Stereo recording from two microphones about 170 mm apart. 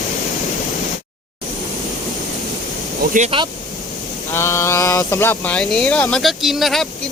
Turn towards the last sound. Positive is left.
turn(degrees=0)  # may be behind; listen again after turning